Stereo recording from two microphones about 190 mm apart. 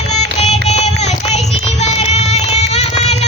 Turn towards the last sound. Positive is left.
turn(degrees=35)  # may be behind; listen again after turning